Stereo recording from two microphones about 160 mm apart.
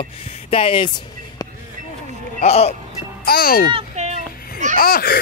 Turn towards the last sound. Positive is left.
turn(degrees=65)  # may be behind; listen again after turning